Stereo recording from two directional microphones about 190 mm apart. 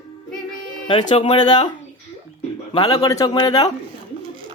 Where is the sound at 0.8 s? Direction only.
25° left (ahead or behind).